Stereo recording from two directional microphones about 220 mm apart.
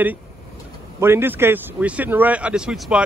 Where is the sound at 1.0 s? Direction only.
10° right (ahead or behind).